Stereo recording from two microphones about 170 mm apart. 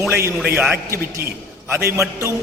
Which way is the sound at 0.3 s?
5° right (ahead or behind).